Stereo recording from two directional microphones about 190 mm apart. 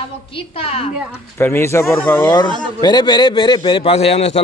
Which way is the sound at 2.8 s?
20° left (ahead or behind).